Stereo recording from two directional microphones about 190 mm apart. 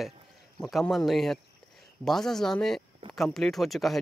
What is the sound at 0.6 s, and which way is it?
Speech, centre (ahead or behind).